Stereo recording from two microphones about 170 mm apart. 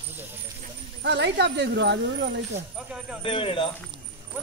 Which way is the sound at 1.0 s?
90° right.